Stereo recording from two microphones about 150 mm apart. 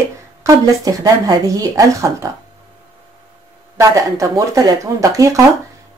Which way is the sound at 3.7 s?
20° right (ahead or behind).